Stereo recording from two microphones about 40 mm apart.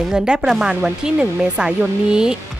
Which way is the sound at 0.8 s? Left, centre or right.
Right.